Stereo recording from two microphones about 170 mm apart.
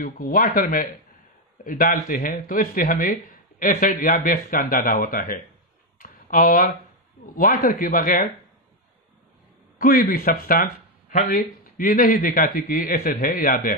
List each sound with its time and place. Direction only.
0.0 s speech: 60° left (ahead or behind)
5.9 s a sound: 55° left (ahead or behind)
7.3 s speech: 55° left (ahead or behind)
9.8 s speech: 55° left (ahead or behind)